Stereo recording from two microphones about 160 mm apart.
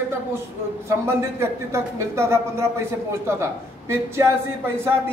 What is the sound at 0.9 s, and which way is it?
A man's voice, 15° right (ahead or behind).